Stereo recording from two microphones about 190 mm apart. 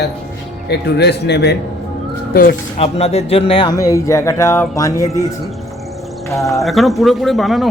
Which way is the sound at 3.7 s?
15° left (ahead or behind).